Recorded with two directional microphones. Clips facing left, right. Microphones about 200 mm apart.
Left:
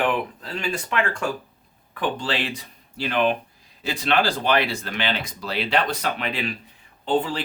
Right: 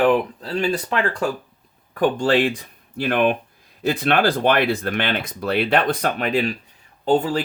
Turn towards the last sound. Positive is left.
turn(degrees=-45)  # may be behind; listen again after turning